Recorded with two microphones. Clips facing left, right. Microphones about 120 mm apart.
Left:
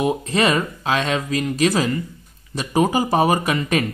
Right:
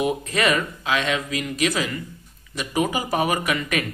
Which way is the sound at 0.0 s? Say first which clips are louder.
Left 3 dB; 30° left (ahead or behind).